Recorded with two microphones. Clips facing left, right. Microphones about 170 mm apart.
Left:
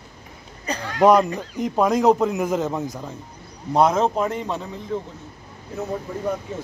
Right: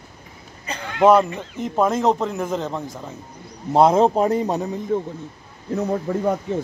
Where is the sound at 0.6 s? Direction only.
40° left (ahead or behind).